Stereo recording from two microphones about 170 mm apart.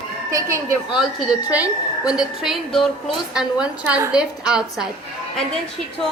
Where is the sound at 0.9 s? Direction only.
5° right (ahead or behind).